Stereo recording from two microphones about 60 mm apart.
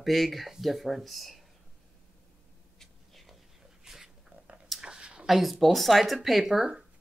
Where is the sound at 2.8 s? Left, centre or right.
Centre.